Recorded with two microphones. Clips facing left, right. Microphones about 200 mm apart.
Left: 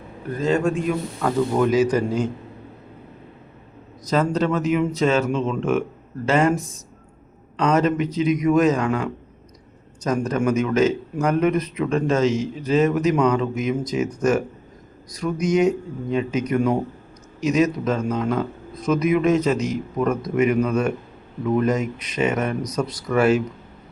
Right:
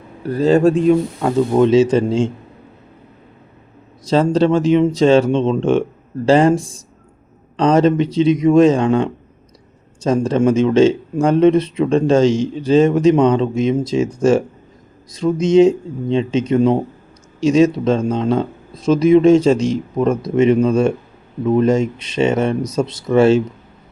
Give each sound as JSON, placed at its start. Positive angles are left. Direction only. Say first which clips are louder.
{"t": 0.2, "sound": "a man's voice", "louder": "right 8 dB", "side_deg": -35}
{"t": 1.2, "sound": "a man's voice", "louder": "right 6 dB", "side_deg": -25}
{"t": 4.0, "sound": "a man's voice", "louder": "right 6 dB", "side_deg": -30}